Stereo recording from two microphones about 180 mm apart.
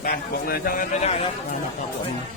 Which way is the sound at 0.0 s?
55° left (ahead or behind).